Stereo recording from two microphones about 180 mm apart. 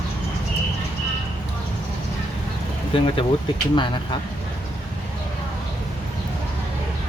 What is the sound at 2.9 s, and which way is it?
Speech, 25° left (ahead or behind).